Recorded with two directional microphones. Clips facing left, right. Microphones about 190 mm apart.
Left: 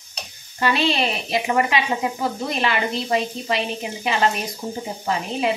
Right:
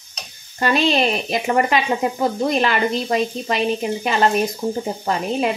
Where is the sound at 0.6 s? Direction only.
45° right (ahead or behind).